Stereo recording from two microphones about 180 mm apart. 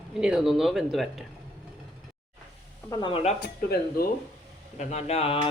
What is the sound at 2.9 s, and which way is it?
Speech, 25° left (ahead or behind).